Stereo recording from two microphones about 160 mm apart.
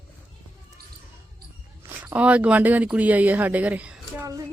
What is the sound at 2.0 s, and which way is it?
Speech, 10° right (ahead or behind).